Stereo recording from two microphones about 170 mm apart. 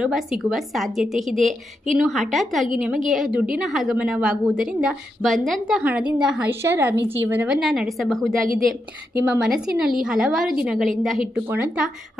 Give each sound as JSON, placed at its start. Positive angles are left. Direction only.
{"t": 0.0, "sound": "a woman's voice", "side_deg": 0}